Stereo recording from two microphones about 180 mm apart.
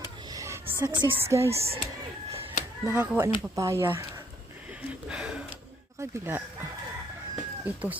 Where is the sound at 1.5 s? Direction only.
35° right (ahead or behind).